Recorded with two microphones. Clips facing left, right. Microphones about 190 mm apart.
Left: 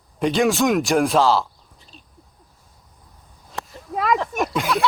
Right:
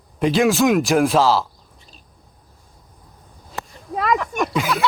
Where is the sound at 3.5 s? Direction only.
Centre (ahead or behind).